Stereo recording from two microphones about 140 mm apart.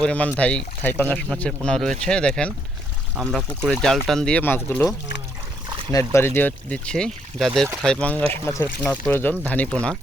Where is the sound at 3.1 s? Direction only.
5° right (ahead or behind); by 4.8 s 15° left (ahead or behind).